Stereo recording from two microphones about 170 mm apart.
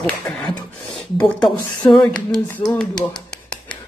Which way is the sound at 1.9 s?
25° left (ahead or behind).